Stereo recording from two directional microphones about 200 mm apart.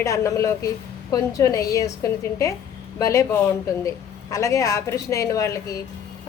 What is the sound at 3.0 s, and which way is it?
Speech, 15° left (ahead or behind).